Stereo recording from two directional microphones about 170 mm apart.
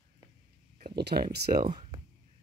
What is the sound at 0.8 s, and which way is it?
Speech, 65° right (ahead or behind).